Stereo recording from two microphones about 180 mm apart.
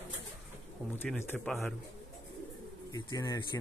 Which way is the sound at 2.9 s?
20° left (ahead or behind).